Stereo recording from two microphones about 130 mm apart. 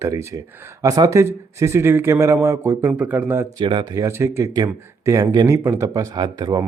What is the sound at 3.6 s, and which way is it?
Speech, 35° right (ahead or behind).